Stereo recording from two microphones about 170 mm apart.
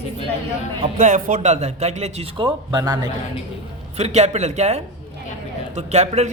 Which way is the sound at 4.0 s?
40° right (ahead or behind).